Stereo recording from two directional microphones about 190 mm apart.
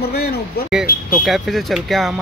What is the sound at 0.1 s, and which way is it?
Speech, 55° left (ahead or behind).